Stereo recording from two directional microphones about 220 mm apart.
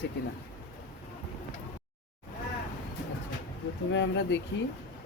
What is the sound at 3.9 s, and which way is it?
Speech, 55° left (ahead or behind).